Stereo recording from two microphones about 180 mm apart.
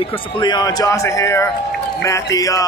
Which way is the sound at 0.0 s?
30° left (ahead or behind).